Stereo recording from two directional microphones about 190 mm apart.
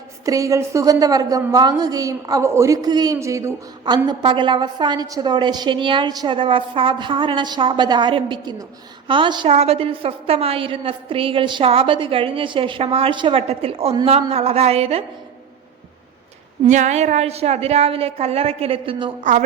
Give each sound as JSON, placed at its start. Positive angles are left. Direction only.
{"t": 0.3, "sound": "a woman's voice", "side_deg": -15}
{"t": 16.6, "sound": "a woman's voice", "side_deg": -40}
{"t": 19.2, "sound": "a woman's voice", "side_deg": -40}